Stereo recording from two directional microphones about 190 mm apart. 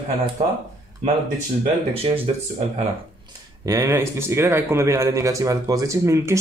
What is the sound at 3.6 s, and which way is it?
Speech, 15° right (ahead or behind).